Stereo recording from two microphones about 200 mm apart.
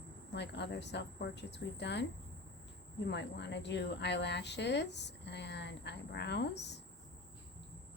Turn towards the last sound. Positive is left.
turn(degrees=60)  # may be behind; listen again after turning